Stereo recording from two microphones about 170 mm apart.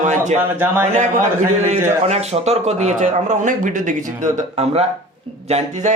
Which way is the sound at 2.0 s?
40° right (ahead or behind).